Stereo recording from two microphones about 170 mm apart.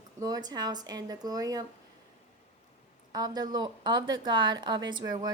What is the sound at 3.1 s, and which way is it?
Speech, 20° right (ahead or behind).